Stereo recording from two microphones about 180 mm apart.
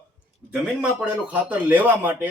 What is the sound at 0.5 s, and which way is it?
Speech, 5° right (ahead or behind).